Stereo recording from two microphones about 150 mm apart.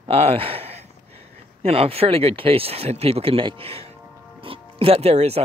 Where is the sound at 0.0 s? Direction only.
40° right (ahead or behind).